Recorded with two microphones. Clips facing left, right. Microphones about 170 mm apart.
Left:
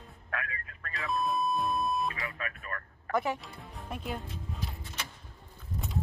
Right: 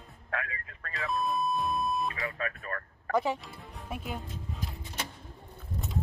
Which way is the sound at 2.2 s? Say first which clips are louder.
Right 4 dB; 30° right (ahead or behind).